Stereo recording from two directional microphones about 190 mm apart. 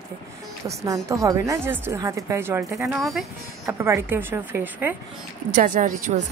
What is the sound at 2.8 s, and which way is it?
Speech, centre (ahead or behind).